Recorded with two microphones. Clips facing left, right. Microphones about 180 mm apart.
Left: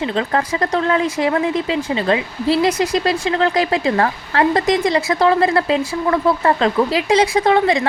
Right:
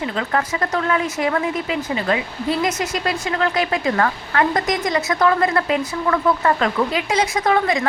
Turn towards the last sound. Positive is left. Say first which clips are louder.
# left 4 dB
turn(degrees=30)  # may be behind; listen again after turning